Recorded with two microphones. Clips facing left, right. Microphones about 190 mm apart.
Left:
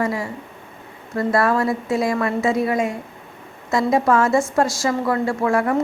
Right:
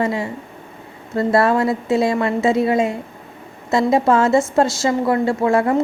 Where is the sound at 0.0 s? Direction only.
25° right (ahead or behind).